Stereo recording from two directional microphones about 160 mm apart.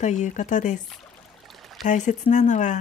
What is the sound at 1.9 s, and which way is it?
Speech, 50° left (ahead or behind).